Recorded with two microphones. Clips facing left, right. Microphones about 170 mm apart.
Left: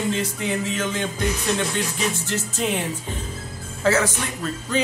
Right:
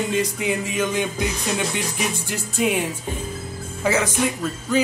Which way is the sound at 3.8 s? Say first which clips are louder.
Even; 15° right (ahead or behind).